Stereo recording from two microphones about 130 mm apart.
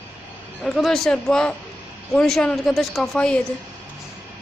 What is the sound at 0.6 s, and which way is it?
Speech, centre (ahead or behind).